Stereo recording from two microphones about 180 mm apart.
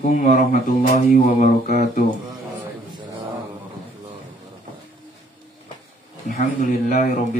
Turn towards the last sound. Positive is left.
turn(degrees=45)  # may be behind; listen again after turning